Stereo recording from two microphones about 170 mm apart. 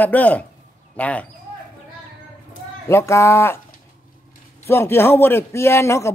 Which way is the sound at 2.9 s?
15° left (ahead or behind).